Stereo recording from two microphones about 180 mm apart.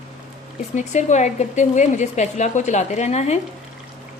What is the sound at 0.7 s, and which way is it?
A woman's voice, 40° left (ahead or behind).